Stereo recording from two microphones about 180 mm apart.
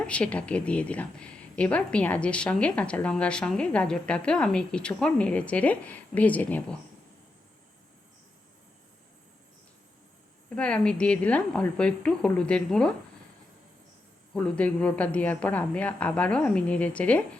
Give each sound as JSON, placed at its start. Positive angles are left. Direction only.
{"t": 0.0, "sound": "a woman's voice", "side_deg": 5}
{"t": 10.5, "sound": "a woman's voice", "side_deg": 5}
{"t": 14.3, "sound": "a woman's voice", "side_deg": 5}